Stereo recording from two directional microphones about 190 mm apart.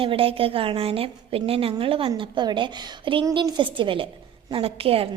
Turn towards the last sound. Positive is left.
turn(degrees=-30)  # may be behind; listen again after turning